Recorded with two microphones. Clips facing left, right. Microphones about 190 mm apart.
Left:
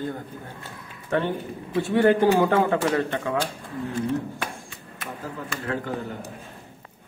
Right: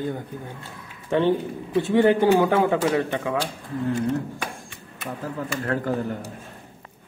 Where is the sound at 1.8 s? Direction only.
15° right (ahead or behind).